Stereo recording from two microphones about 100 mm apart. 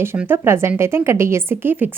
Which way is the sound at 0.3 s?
25° right (ahead or behind).